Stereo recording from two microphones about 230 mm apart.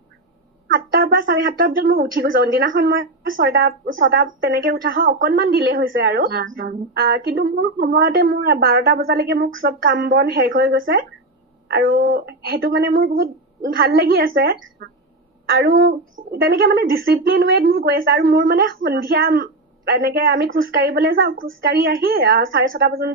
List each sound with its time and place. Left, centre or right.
0.7 s a sound: right
1.0 s music: right
1.3 s speech: right
2.6 s a woman's voice: right
3.0 s a woman's voice: right